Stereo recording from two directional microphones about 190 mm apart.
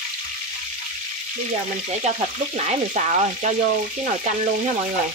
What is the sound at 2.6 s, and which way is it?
Frying, 40° right (ahead or behind).